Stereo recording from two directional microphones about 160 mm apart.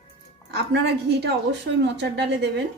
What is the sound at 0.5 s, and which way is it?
A woman's voice, 90° right.